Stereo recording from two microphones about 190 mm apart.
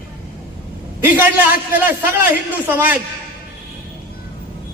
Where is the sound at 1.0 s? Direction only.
10° right (ahead or behind).